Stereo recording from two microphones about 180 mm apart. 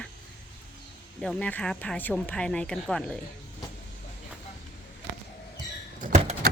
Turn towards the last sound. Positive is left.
turn(degrees=-50)  # may be behind; listen again after turning